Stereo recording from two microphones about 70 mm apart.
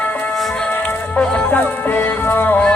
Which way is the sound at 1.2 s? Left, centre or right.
Centre.